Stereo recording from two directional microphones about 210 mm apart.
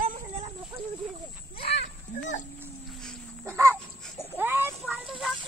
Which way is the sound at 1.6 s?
55° left (ahead or behind).